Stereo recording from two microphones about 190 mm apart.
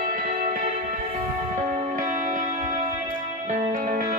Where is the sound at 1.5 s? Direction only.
35° right (ahead or behind).